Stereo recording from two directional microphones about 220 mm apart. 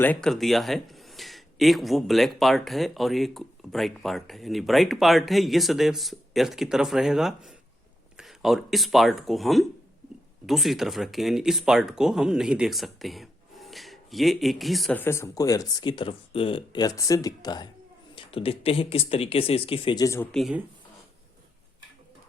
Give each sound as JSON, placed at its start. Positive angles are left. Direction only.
{"t": 0.0, "sound": "speech", "side_deg": 5}
{"t": 20.3, "sound": "speech", "side_deg": 0}